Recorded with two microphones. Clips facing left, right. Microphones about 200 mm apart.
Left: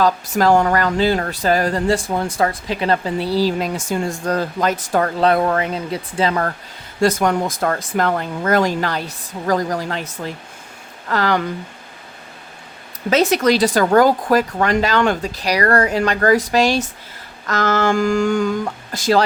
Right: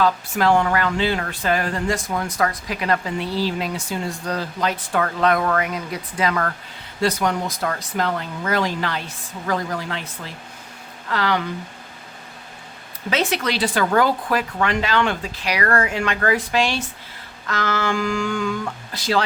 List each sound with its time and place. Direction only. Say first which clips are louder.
0.0 s speech: left 3 dB; 40° left (ahead or behind)
7.0 s speech: left 5 dB; 50° left (ahead or behind)
11.1 s speech: left 4 dB; 45° left (ahead or behind)
13.1 s speech: left 8 dB; 40° left (ahead or behind)